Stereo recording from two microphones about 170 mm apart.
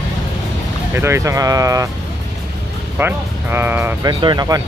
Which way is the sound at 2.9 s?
15° right (ahead or behind).